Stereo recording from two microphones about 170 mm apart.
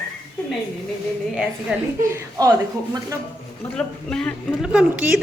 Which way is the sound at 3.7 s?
5° left (ahead or behind).